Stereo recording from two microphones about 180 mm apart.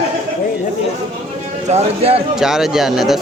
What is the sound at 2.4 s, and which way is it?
Speech, centre (ahead or behind).